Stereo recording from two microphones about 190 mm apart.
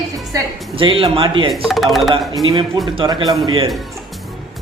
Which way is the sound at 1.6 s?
Centre (ahead or behind).